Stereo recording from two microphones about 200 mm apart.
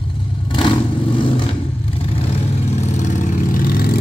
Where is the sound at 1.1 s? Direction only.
25° left (ahead or behind).